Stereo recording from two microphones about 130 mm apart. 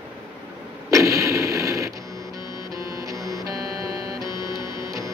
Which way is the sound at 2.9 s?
25° right (ahead or behind).